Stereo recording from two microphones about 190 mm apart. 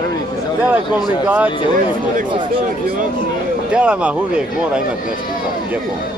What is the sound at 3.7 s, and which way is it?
Speech, 5° right (ahead or behind).